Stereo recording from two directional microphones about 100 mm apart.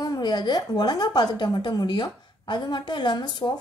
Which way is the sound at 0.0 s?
40° left (ahead or behind).